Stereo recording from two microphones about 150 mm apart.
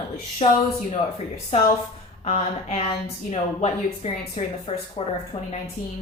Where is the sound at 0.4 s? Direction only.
50° left (ahead or behind).